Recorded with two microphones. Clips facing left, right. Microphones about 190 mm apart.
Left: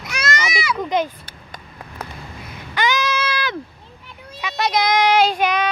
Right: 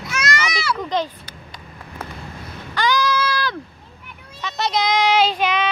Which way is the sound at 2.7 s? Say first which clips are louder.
Right 1 dB; 20° left (ahead or behind).